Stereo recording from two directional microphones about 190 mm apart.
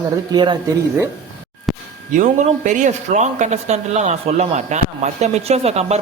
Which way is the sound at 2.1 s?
40° right (ahead or behind).